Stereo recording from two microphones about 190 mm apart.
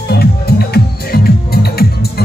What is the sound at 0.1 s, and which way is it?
Music, 55° left (ahead or behind).